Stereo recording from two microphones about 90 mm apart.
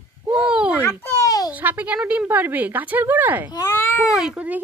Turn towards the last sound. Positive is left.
turn(degrees=-15)  # may be behind; listen again after turning